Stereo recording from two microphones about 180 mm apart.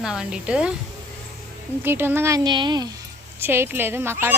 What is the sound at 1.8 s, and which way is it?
A woman's voice, 10° right (ahead or behind).